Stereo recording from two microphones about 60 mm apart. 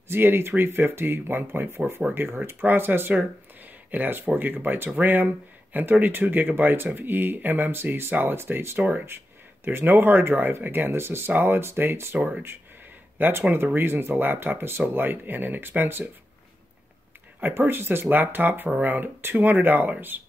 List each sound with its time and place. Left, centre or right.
0.1 s speech: right
12.2 s speech: right
13.2 s speech: right
17.4 s speech: right